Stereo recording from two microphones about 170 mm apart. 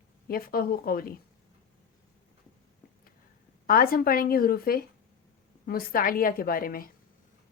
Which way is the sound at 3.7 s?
55° left (ahead or behind).